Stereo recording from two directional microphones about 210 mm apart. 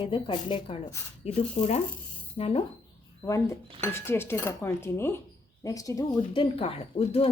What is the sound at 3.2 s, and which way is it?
Speech, 15° left (ahead or behind).